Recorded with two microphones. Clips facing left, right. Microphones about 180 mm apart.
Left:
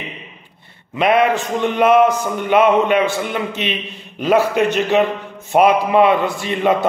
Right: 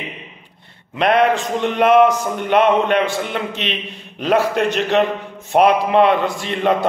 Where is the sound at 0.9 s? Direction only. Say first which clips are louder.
Even; 5° left (ahead or behind).